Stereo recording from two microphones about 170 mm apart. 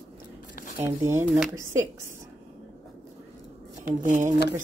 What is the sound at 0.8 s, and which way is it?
Speech, 15° right (ahead or behind).